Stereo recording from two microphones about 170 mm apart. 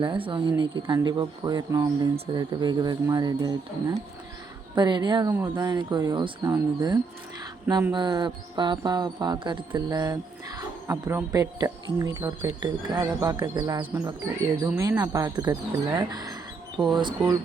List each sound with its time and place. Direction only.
0.0 s speech: 30° right (ahead or behind)